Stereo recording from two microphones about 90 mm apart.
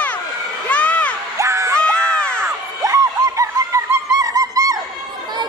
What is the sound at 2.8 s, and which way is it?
Music, 35° right (ahead or behind).